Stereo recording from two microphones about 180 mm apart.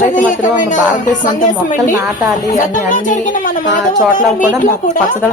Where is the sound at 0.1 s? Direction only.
45° left (ahead or behind).